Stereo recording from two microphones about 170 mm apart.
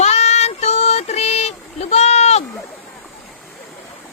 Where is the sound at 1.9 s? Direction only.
40° left (ahead or behind).